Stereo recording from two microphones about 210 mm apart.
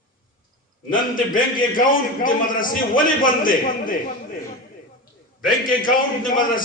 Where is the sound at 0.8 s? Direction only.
40° left (ahead or behind).